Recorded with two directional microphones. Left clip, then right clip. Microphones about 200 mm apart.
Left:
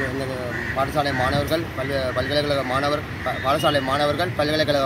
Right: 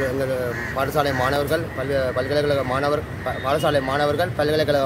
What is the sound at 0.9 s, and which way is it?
Speech, 30° right (ahead or behind).